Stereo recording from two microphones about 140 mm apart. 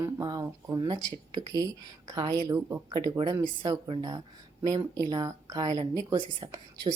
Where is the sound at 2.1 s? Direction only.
25° right (ahead or behind).